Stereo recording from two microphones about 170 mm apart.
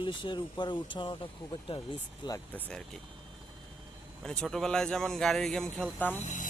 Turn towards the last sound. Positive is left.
turn(degrees=45)  # may be behind; listen again after turning